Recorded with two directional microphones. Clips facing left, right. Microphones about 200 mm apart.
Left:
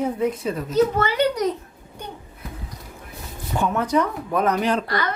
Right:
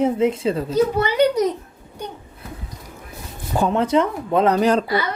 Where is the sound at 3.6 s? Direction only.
30° right (ahead or behind).